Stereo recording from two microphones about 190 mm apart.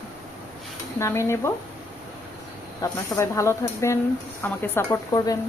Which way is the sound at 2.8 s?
15° left (ahead or behind).